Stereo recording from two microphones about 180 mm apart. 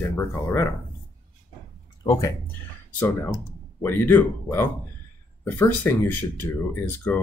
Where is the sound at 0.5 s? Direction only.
15° left (ahead or behind).